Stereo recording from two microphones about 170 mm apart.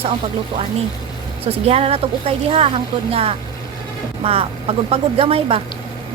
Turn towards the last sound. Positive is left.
turn(degrees=-35)  # may be behind; listen again after turning